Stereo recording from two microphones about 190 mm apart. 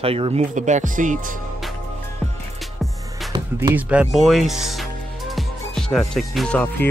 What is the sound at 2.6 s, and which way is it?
Music, centre (ahead or behind).